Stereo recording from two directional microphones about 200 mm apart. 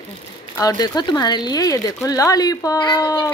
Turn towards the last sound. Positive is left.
turn(degrees=20)  # may be behind; listen again after turning